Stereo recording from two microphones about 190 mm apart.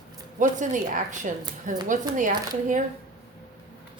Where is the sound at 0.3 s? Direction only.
40° right (ahead or behind).